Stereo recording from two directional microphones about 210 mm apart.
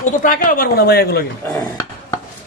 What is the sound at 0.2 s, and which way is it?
Speech, 40° left (ahead or behind).